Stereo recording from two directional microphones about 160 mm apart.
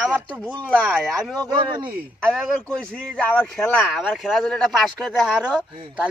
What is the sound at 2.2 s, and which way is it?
Speech, 5° left (ahead or behind).